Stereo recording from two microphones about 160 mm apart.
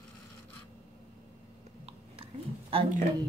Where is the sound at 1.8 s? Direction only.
35° right (ahead or behind).